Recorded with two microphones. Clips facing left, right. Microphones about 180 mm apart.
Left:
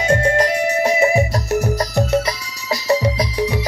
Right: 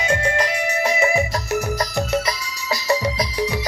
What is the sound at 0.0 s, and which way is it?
Music, 40° left (ahead or behind).